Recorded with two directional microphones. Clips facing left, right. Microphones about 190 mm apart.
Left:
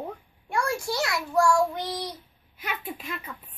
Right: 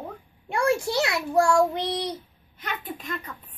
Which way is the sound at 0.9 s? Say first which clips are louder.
Right 3 dB; 60° right (ahead or behind).